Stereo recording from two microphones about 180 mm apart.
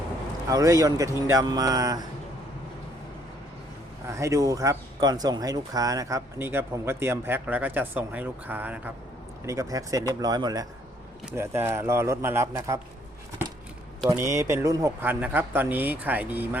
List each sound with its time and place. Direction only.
0.5 s speech: 20° right (ahead or behind)
4.0 s speech: 15° right (ahead or behind)
14.1 s speech: 15° right (ahead or behind)